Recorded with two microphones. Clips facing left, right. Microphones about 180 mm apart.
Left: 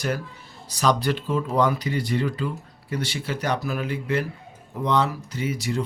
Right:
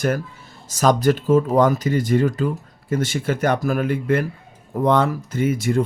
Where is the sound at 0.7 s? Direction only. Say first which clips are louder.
Right 6 dB; 45° right (ahead or behind).